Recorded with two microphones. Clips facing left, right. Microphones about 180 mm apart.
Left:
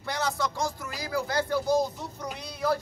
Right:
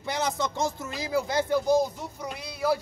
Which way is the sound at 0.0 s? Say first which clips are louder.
Right 1 dB; 20° right (ahead or behind).